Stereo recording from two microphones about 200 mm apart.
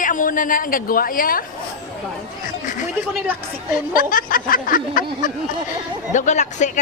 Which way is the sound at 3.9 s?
45° left (ahead or behind).